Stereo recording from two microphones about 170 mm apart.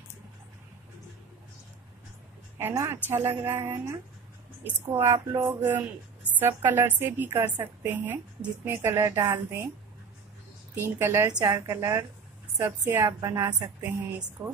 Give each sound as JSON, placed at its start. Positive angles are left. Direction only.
{"t": 2.6, "sound": "a woman's voice", "side_deg": -15}
{"t": 10.7, "sound": "a woman's voice", "side_deg": -15}